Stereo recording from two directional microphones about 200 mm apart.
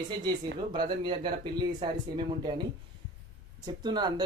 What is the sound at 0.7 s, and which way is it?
Speech, 25° right (ahead or behind).